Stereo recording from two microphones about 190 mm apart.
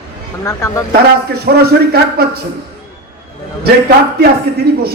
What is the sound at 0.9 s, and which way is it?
A man's voice, 55° right (ahead or behind).